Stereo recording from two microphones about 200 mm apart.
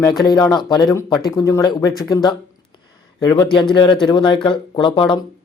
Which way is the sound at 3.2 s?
20° left (ahead or behind).